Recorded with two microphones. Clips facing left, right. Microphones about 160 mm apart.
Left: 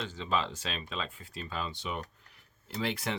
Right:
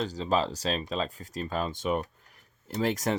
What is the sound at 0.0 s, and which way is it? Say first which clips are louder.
Speech: right 5 dB; 40° right (ahead or behind).